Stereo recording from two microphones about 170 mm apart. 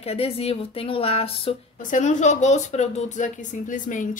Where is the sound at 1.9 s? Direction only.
45° left (ahead or behind).